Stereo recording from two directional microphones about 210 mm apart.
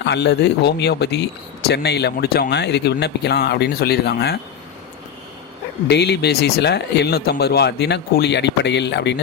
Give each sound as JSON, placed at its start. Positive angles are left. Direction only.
{"t": 0.0, "sound": "speech", "side_deg": 55}
{"t": 5.9, "sound": "speech", "side_deg": 50}